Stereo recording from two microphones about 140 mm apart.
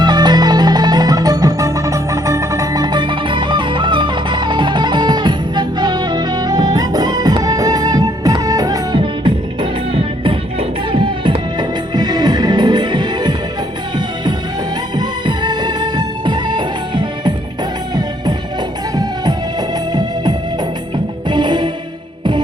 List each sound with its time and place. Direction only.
0.0 s music: 30° right (ahead or behind)
14.9 s music: 30° right (ahead or behind)
19.9 s music: 30° right (ahead or behind)